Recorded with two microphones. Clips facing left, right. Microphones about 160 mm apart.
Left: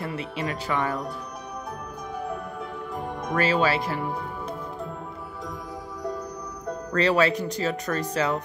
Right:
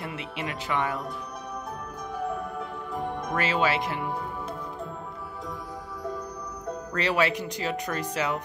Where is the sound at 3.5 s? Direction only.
20° right (ahead or behind).